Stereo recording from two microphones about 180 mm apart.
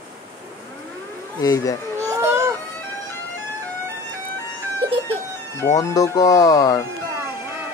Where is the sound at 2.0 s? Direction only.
15° right (ahead or behind).